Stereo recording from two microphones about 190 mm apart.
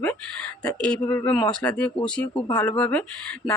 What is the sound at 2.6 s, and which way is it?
Speech, 5° left (ahead or behind).